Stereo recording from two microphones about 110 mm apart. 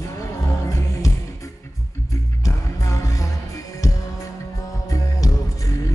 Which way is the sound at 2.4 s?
30° left (ahead or behind).